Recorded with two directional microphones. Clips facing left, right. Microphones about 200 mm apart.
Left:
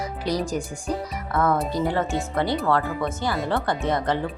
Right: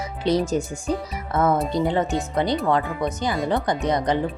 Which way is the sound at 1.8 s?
20° right (ahead or behind).